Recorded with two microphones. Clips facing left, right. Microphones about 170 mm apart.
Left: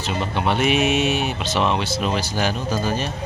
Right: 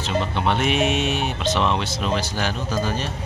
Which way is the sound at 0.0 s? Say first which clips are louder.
Even; 10° left (ahead or behind).